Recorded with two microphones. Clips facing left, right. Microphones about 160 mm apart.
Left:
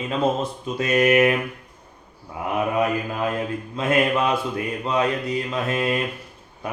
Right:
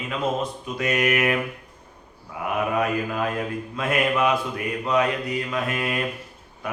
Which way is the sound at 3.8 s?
25° left (ahead or behind).